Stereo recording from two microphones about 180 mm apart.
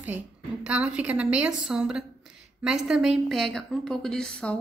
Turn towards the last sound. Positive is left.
turn(degrees=5)  # may be behind; listen again after turning